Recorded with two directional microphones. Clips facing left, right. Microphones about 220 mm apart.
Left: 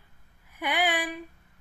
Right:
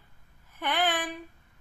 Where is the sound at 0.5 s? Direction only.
10° left (ahead or behind).